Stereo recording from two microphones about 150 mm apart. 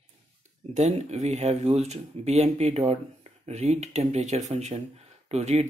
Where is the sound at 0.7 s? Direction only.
50° right (ahead or behind).